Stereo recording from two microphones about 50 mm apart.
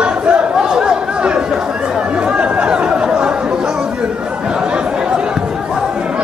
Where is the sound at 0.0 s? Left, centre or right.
Right.